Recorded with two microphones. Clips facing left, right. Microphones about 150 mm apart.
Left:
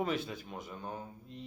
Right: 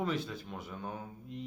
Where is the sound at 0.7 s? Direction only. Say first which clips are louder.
Right 1 dB; 5° right (ahead or behind).